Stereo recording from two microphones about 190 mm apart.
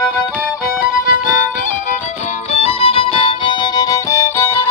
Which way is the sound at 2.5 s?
30° left (ahead or behind).